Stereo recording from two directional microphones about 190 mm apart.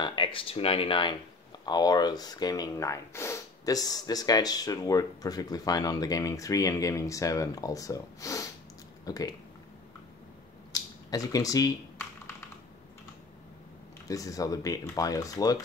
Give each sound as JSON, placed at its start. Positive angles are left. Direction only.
{"t": 0.0, "sound": "speech", "side_deg": 25}
{"t": 10.7, "sound": "a sound", "side_deg": 20}
{"t": 14.0, "sound": "speech", "side_deg": 20}